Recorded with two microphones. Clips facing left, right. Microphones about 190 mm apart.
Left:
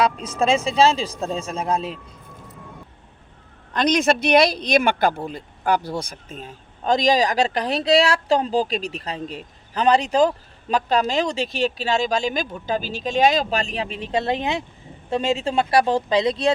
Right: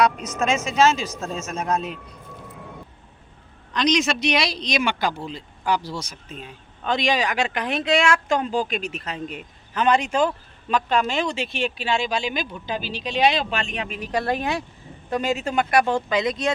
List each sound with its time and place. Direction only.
0.0 s speech: 30° left (ahead or behind)
3.7 s speech: 55° left (ahead or behind); by 16.5 s 30° left (ahead or behind)